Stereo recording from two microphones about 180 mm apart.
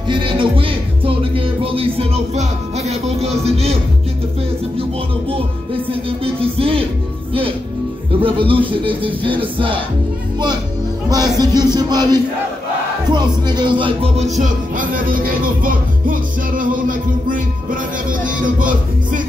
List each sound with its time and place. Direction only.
0.1 s music: 30° right (ahead or behind)
5.9 s music: 30° right (ahead or behind)
8.2 s music: 30° right (ahead or behind)
11.1 s music: 20° right (ahead or behind)
13.1 s speech: 25° right (ahead or behind); by 19.2 s 45° right (ahead or behind)